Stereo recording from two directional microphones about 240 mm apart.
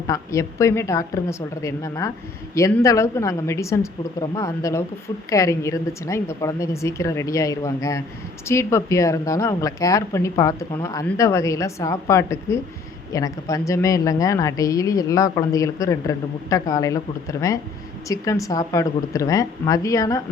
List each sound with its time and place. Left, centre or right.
0.1 s speech: centre